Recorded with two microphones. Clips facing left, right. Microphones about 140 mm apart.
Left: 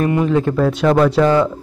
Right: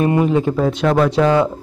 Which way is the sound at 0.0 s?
25° right (ahead or behind).